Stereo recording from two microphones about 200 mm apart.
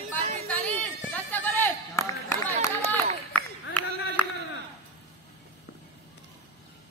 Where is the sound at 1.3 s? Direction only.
10° left (ahead or behind).